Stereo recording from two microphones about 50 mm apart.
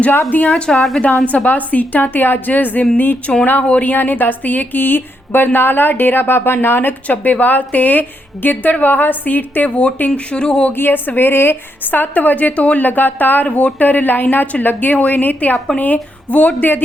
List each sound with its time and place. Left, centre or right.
0.4 s a woman's voice: centre
1.2 s a woman's voice: left
3.6 s speech: left
7.1 s a woman's voice: left
10.7 s a woman's voice: left
15.5 s a woman's voice: centre
15.8 s a woman's voice: left